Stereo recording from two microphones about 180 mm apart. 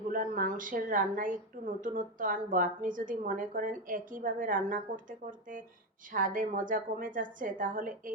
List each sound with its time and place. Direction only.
0.1 s a woman's voice: 50° right (ahead or behind)